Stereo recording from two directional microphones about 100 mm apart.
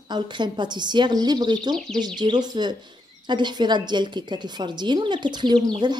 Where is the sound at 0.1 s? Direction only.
50° right (ahead or behind).